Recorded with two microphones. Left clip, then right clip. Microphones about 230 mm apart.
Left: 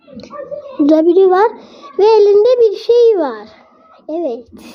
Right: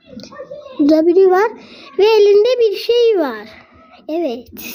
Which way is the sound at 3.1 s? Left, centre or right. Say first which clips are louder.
Left 1 dB; right.